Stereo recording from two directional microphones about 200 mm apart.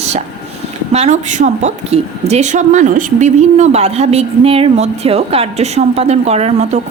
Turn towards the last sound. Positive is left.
turn(degrees=-35)  # may be behind; listen again after turning